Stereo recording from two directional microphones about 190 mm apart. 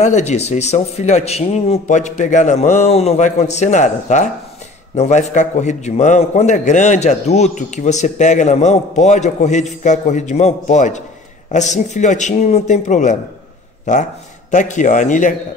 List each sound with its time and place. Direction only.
0.0 s a man's voice: 35° left (ahead or behind)
14.5 s a man's voice: 40° left (ahead or behind)